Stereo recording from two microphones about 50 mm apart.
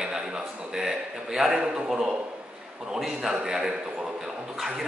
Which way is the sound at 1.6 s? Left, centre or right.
Centre.